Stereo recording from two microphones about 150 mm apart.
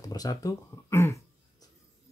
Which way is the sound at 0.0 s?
25° left (ahead or behind).